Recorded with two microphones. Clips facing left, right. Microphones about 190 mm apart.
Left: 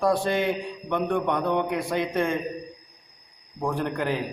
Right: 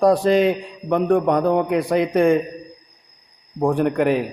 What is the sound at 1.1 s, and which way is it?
Speech, 35° right (ahead or behind).